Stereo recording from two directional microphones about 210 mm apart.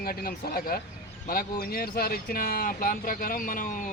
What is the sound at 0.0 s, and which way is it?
Speech, 45° left (ahead or behind).